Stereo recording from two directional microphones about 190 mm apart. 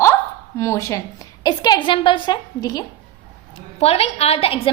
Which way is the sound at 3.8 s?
30° left (ahead or behind).